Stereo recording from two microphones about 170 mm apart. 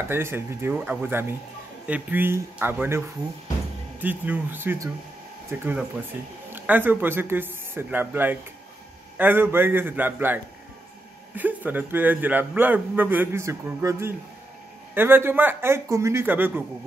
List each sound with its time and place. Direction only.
0.1 s a man's voice: 15° right (ahead or behind)
4.0 s a man's voice: 10° right (ahead or behind)